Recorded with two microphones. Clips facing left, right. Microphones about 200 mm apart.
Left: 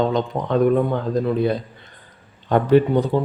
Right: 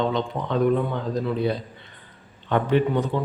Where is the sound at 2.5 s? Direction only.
40° left (ahead or behind).